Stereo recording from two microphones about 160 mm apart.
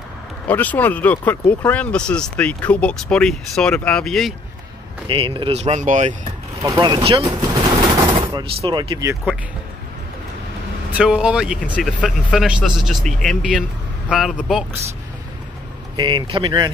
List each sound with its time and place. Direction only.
0.5 s speech: 10° left (ahead or behind)
5.0 s speech: 35° right (ahead or behind); by 6.1 s 50° right (ahead or behind)
6.6 s speech: 25° right (ahead or behind)
7.2 s a sound: 20° right (ahead or behind)
7.7 s fusillade: 35° right (ahead or behind)
8.5 s speech: 30° right (ahead or behind)
10.9 s a man's voice: 5° right (ahead or behind)
12.0 s speech: 5° left (ahead or behind)
12.4 s a man's voice: 5° right (ahead or behind)
16.0 s speech: 30° right (ahead or behind)